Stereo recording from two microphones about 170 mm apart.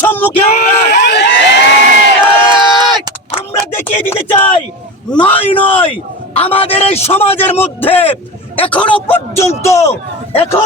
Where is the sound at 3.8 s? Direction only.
10° left (ahead or behind).